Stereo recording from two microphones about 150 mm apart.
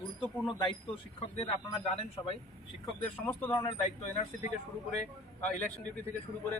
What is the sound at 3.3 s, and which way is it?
Speech, 10° left (ahead or behind).